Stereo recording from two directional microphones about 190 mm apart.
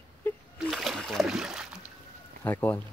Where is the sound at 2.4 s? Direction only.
10° left (ahead or behind).